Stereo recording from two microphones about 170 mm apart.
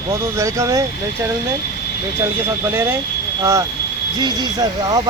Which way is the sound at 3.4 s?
20° right (ahead or behind).